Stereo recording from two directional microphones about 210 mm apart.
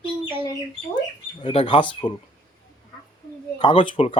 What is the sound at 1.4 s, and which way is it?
Speech, 25° left (ahead or behind).